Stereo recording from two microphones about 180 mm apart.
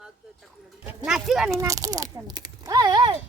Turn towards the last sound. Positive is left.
turn(degrees=-25)  # may be behind; listen again after turning